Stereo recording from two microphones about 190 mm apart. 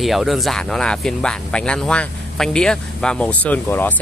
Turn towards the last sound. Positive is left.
turn(degrees=10)  # may be behind; listen again after turning